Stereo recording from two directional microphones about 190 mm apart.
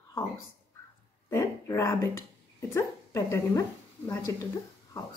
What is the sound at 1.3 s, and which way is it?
Speech, 15° left (ahead or behind).